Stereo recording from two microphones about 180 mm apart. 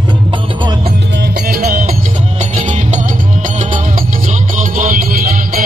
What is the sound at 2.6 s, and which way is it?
Music, 40° right (ahead or behind).